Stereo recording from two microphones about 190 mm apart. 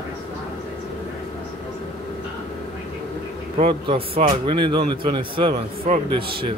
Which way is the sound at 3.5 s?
30° right (ahead or behind).